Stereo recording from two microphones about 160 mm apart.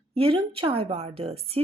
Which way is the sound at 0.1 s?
35° right (ahead or behind).